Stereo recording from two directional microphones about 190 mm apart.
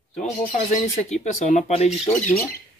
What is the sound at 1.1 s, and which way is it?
Speech, 35° left (ahead or behind).